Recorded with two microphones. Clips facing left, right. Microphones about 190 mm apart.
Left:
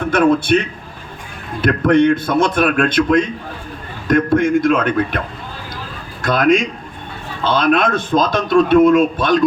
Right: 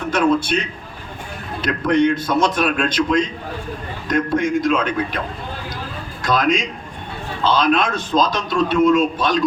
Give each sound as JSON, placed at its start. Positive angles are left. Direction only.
{"t": 0.1, "sound": "a man's voice", "side_deg": 55}
{"t": 1.6, "sound": "a man's voice", "side_deg": 55}
{"t": 6.2, "sound": "a man's voice", "side_deg": 55}